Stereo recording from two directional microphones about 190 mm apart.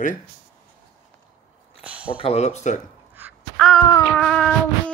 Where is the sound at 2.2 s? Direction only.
35° left (ahead or behind).